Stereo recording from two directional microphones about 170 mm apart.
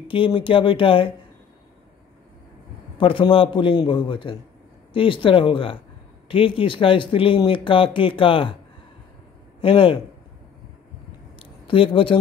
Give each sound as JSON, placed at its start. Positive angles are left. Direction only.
{"t": 0.1, "sound": "speech", "side_deg": 30}
{"t": 3.0, "sound": "a man's voice", "side_deg": 30}
{"t": 9.6, "sound": "a man's voice", "side_deg": 30}
{"t": 11.3, "sound": "a sound", "side_deg": 30}